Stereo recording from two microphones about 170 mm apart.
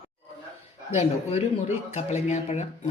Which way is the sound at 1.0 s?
40° left (ahead or behind).